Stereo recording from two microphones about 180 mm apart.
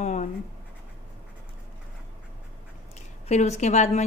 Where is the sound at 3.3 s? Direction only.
40° left (ahead or behind).